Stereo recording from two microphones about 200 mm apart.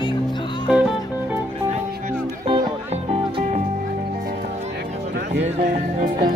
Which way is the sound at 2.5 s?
25° right (ahead or behind).